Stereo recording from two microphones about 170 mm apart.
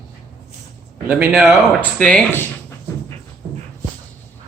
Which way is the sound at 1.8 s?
5° left (ahead or behind).